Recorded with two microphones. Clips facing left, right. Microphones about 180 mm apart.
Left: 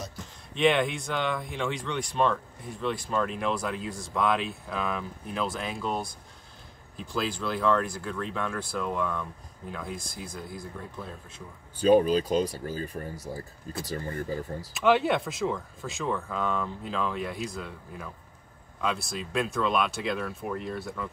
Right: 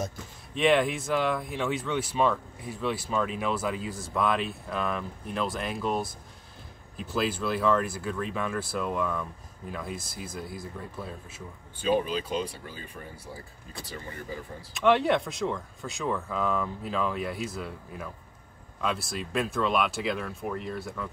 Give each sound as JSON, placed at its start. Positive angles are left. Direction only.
{"t": 0.6, "sound": "speech", "side_deg": 0}
{"t": 11.8, "sound": "speech", "side_deg": 40}
{"t": 14.7, "sound": "speech", "side_deg": 0}